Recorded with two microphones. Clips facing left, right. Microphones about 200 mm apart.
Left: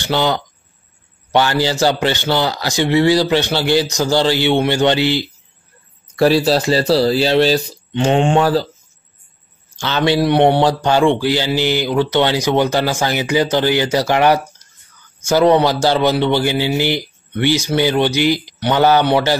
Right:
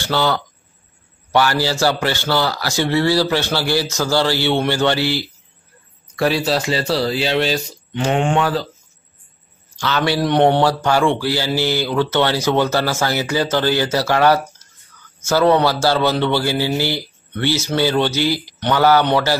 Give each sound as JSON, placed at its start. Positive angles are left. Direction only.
{"t": 0.0, "sound": "speech", "side_deg": 20}
{"t": 6.1, "sound": "speech", "side_deg": 35}
{"t": 9.8, "sound": "speech", "side_deg": 25}
{"t": 10.2, "sound": "speech", "side_deg": 10}